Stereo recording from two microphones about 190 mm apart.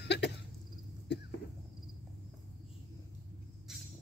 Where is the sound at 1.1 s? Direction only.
65° left (ahead or behind).